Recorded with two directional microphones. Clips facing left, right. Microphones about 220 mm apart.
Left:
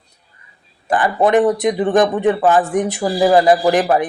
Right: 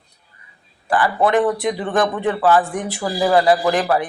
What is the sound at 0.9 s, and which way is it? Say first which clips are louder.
Speech: left 3 dB; 20° left (ahead or behind).